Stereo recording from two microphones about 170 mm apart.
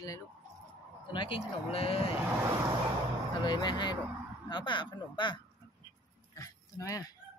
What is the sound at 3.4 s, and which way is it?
Speech, 25° left (ahead or behind).